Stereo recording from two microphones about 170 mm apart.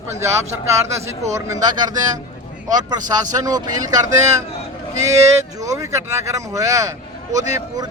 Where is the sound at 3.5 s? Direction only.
20° right (ahead or behind).